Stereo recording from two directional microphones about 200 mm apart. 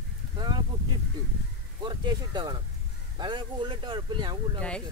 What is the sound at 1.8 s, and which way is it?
Speech, 20° right (ahead or behind).